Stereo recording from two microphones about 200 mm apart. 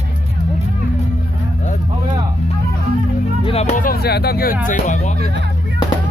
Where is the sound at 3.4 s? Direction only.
35° left (ahead or behind); by 4.5 s 50° left (ahead or behind).